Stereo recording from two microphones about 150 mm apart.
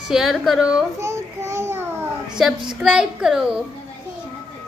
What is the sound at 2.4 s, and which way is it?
A woman's voice, 5° right (ahead or behind).